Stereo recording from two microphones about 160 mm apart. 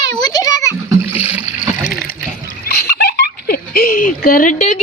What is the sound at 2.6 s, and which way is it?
Giggle, 80° left.